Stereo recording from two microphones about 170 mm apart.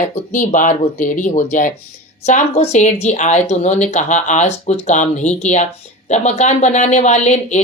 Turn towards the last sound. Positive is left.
turn(degrees=40)  # may be behind; listen again after turning